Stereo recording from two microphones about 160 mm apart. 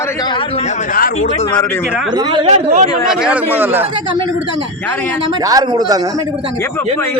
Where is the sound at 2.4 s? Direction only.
45° right (ahead or behind).